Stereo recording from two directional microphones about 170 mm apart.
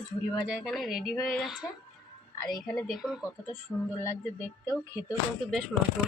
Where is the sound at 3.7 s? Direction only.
10° left (ahead or behind).